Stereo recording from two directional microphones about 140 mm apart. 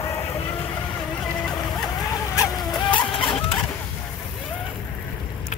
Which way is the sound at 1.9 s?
25° left (ahead or behind).